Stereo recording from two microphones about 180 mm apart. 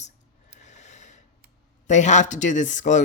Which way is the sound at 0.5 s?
40° left (ahead or behind).